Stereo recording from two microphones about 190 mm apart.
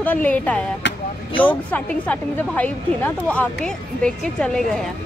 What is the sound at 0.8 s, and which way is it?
Vehicle, 70° left (ahead or behind).